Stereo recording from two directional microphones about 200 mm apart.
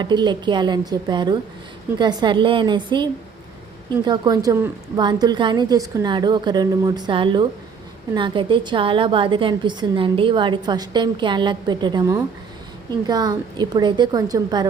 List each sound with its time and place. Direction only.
0.0 s a woman's voice: 20° right (ahead or behind)